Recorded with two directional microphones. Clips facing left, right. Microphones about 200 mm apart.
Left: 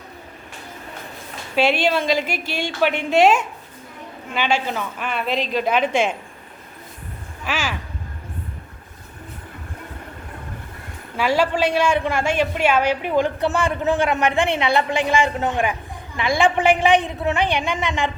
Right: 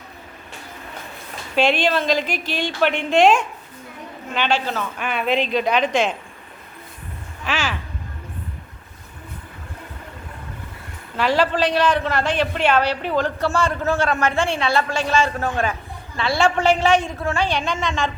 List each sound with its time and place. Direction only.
1.5 s a man's voice: 10° left (ahead or behind)
4.9 s a man's voice: centre (ahead or behind)
7.4 s a sound: 5° left (ahead or behind)
11.2 s a man's voice: 10° left (ahead or behind)